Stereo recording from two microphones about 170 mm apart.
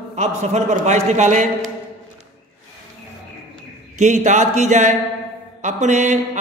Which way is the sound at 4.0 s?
45° right (ahead or behind).